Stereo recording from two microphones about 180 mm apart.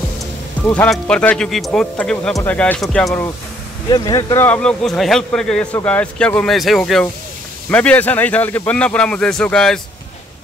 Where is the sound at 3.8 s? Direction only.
20° left (ahead or behind).